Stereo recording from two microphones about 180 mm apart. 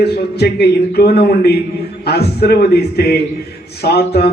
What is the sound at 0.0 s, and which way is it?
Speech, 65° left (ahead or behind).